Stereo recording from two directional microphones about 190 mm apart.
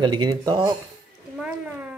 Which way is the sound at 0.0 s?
25° right (ahead or behind).